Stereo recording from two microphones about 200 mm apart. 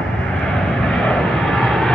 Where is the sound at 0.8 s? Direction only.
Centre (ahead or behind).